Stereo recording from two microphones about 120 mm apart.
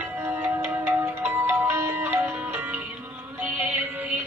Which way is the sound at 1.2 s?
15° right (ahead or behind).